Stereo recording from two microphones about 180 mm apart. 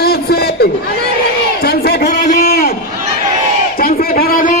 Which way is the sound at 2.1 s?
40° left (ahead or behind).